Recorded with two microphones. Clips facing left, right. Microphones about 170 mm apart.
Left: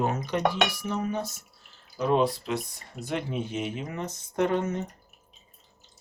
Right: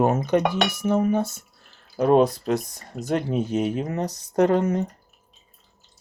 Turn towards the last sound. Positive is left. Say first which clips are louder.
# right 6 dB
turn(degrees=-40)  # may be behind; listen again after turning